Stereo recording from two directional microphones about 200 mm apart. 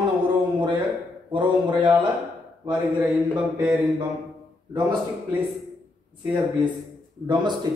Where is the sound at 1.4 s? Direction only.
25° right (ahead or behind).